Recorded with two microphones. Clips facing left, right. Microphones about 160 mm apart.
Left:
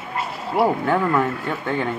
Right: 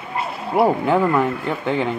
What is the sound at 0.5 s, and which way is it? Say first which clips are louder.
Speech: right 3 dB; 15° right (ahead or behind).